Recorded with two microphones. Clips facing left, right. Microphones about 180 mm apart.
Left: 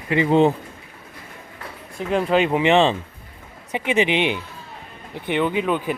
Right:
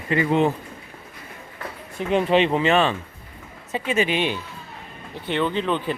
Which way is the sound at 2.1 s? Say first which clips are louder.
Even; 5° left (ahead or behind).